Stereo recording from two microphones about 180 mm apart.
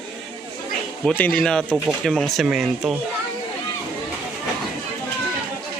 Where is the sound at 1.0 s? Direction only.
10° left (ahead or behind).